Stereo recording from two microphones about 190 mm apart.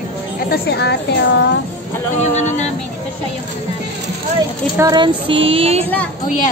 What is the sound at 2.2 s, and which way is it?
Speech, 35° left (ahead or behind).